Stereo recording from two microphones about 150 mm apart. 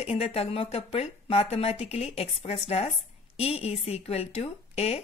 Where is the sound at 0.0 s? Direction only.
45° left (ahead or behind).